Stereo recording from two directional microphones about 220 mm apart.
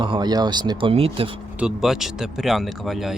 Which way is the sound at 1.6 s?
5° right (ahead or behind).